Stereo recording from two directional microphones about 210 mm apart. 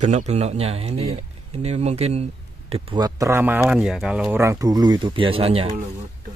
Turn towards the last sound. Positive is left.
turn(degrees=-25)  # may be behind; listen again after turning